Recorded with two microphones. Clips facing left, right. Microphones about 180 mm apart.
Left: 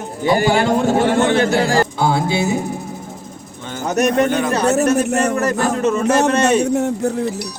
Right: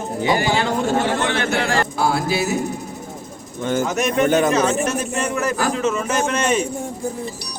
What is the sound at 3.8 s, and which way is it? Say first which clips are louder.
Speech: left 5 dB; 40° left (ahead or behind).